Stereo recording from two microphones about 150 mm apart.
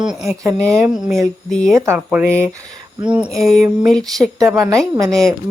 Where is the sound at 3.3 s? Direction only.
Centre (ahead or behind).